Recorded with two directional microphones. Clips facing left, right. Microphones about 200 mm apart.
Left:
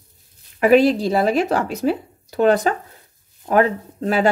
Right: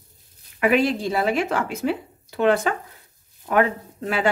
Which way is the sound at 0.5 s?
35° left (ahead or behind).